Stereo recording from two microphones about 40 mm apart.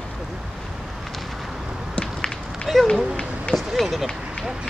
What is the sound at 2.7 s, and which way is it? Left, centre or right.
Speech, centre.